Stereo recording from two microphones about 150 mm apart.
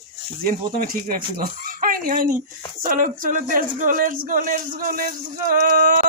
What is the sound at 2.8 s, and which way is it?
Speech, 65° right (ahead or behind).